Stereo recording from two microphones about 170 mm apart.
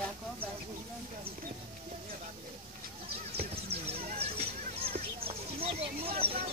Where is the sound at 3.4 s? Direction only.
35° right (ahead or behind).